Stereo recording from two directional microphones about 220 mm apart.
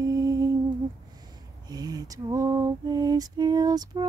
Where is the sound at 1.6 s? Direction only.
20° right (ahead or behind).